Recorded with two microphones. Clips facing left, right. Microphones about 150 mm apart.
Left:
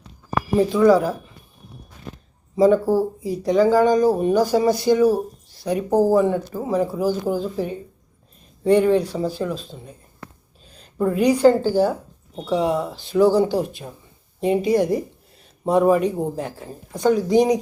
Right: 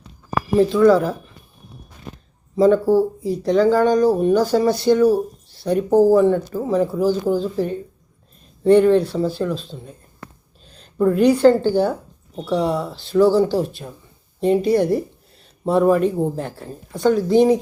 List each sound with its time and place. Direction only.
0.6 s speech: 10° left (ahead or behind)
2.6 s speech: 10° left (ahead or behind)
10.7 s speech: 5° left (ahead or behind)